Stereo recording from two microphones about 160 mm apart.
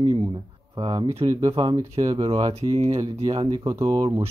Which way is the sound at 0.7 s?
30° right (ahead or behind).